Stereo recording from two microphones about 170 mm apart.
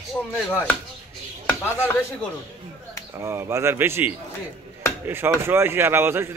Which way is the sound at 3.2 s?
15° right (ahead or behind).